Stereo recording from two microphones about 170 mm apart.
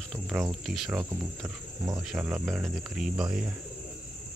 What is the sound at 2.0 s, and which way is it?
Speech, 5° right (ahead or behind).